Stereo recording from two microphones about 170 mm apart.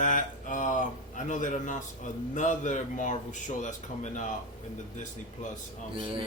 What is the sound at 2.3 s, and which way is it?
Speech, 45° left (ahead or behind).